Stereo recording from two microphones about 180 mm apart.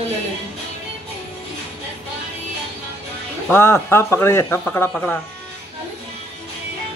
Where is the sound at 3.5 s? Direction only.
10° left (ahead or behind).